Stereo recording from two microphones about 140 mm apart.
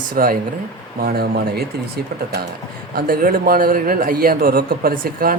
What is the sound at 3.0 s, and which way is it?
Speech, 90° right.